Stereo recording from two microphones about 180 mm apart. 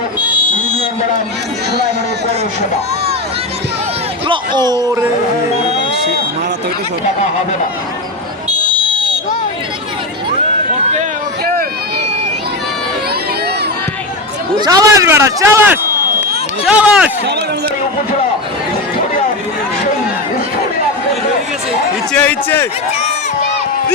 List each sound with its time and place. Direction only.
4.3 s a sound: 25° right (ahead or behind)
14.6 s a man's voice: 20° right (ahead or behind)
22.1 s a man's voice: 10° left (ahead or behind)